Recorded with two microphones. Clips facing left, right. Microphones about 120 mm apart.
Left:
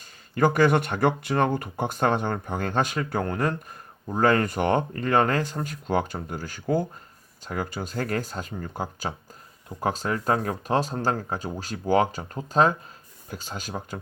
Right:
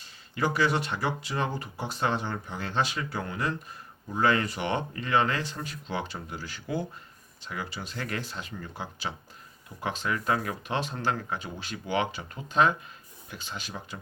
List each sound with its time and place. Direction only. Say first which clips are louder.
0.0 s speech: left 7 dB; 50° left (ahead or behind)